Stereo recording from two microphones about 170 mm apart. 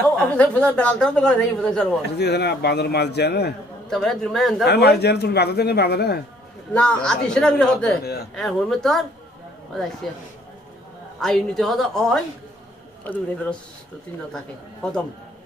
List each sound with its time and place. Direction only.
0.2 s a woman's voice: 5° left (ahead or behind)
2.1 s a man's voice: 75° left (ahead or behind)
3.9 s a woman's voice: centre (ahead or behind)
4.6 s a man's voice: 75° left (ahead or behind)
6.7 s a woman's voice: 5° left (ahead or behind)
8.0 s a man's voice: 65° left (ahead or behind)
8.4 s a woman's voice: centre (ahead or behind)
11.1 s a woman's voice: centre (ahead or behind)